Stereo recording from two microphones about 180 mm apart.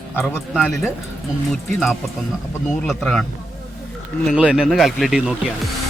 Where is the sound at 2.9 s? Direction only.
Centre (ahead or behind).